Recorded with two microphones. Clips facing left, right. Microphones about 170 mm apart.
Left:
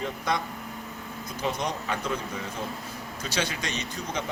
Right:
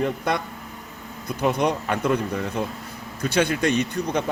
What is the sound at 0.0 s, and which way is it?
Speech, 60° right (ahead or behind).